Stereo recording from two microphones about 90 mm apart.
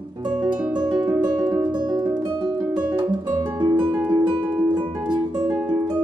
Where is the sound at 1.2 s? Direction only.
50° right (ahead or behind).